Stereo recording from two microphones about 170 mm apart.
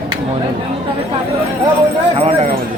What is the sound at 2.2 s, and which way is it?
Speech, 35° right (ahead or behind).